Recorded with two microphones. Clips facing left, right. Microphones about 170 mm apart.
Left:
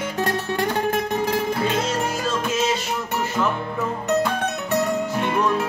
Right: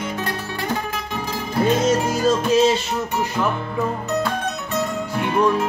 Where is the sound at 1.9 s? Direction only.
35° right (ahead or behind).